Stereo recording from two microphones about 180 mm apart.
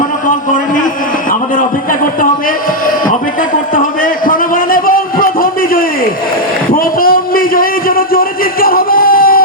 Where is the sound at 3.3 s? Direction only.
50° left (ahead or behind).